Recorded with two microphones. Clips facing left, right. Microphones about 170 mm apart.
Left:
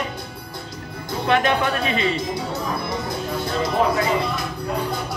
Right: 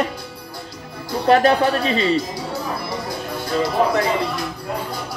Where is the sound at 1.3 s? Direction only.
35° right (ahead or behind).